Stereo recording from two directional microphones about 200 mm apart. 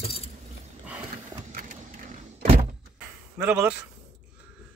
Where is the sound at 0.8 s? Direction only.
5° right (ahead or behind).